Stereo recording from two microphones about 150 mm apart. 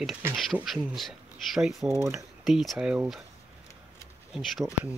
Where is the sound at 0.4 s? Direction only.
Centre (ahead or behind).